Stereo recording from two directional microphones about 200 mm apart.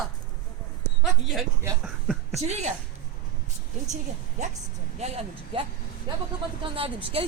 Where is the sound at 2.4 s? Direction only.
35° right (ahead or behind).